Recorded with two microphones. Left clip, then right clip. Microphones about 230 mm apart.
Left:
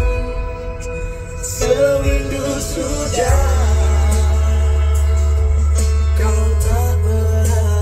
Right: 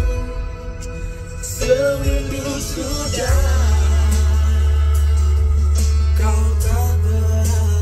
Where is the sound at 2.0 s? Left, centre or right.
Centre.